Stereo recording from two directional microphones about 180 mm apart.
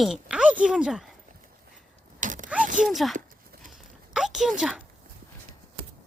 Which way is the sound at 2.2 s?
45° right (ahead or behind).